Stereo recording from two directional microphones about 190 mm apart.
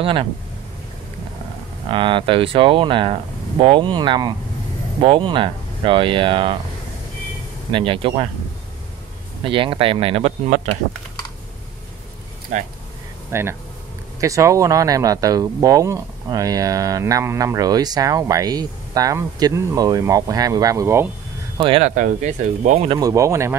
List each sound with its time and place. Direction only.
0.0 s speech: 25° right (ahead or behind)
1.9 s speech: 25° right (ahead or behind)
7.7 s speech: 25° right (ahead or behind)
9.4 s speech: 25° right (ahead or behind)
13.3 s speech: 15° right (ahead or behind)
21.5 s speech: 30° right (ahead or behind)
21.9 s speech: 45° right (ahead or behind)
22.8 s speech: 20° right (ahead or behind)